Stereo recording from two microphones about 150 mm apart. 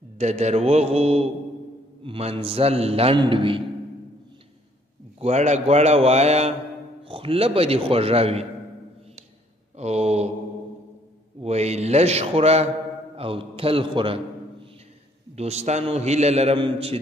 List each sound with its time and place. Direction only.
0.2 s a man's voice: 45° right (ahead or behind)
5.2 s a man's voice: 50° right (ahead or behind)
9.8 s mantra: 45° right (ahead or behind)
11.4 s a man's voice: 45° right (ahead or behind)